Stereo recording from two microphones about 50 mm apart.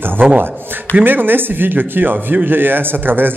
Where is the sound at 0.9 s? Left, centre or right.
Right.